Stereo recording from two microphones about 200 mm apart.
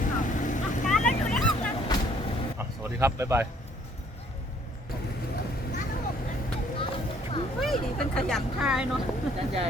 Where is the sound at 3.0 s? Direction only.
15° right (ahead or behind).